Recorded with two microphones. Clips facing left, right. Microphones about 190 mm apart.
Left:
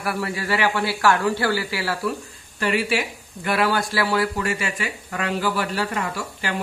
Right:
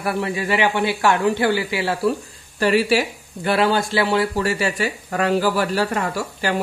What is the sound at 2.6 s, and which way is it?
Speech, 35° right (ahead or behind).